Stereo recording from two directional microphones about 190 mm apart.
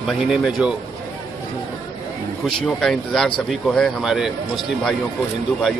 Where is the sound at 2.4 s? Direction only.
Centre (ahead or behind).